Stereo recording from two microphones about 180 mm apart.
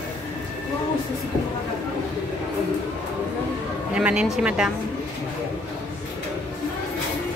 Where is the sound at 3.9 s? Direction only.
5° right (ahead or behind).